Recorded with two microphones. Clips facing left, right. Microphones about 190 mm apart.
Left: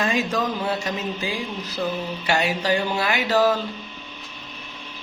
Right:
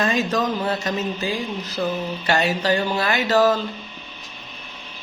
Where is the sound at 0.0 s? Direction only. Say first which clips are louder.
Right 2 dB; 10° left (ahead or behind).